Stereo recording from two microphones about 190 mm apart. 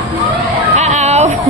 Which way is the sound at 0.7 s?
35° right (ahead or behind).